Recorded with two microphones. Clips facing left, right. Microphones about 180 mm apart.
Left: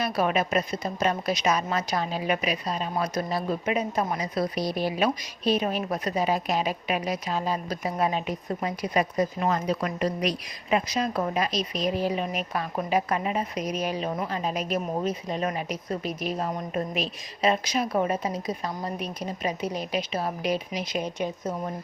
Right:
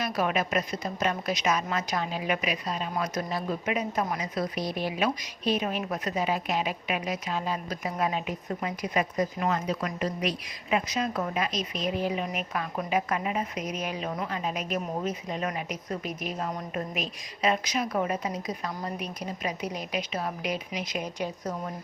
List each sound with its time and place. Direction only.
0.0 s a woman's voice: 30° left (ahead or behind)